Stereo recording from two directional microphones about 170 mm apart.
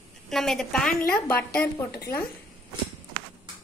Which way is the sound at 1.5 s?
65° left (ahead or behind).